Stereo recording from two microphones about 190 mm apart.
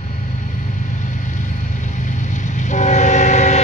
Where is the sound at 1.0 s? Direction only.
40° left (ahead or behind).